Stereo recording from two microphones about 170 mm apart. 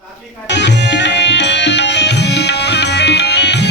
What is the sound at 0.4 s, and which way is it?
Tabla, 90° left.